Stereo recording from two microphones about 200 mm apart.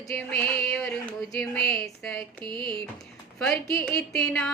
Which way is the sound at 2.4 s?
25° right (ahead or behind).